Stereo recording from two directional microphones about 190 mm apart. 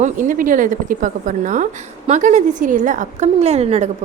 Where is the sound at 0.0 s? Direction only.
45° right (ahead or behind).